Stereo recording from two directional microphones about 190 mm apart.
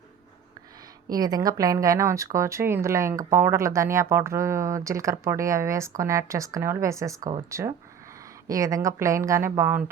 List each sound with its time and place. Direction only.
1.0 s speech: 20° right (ahead or behind)